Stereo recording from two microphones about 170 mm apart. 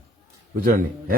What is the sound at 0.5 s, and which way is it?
Speech, 60° right (ahead or behind).